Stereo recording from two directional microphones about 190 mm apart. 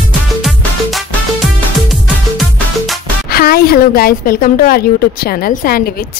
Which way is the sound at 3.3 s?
50° left (ahead or behind).